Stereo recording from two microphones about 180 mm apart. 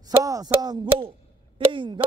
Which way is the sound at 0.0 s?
20° right (ahead or behind).